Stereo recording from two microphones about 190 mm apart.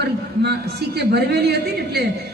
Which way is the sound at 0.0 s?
60° right (ahead or behind).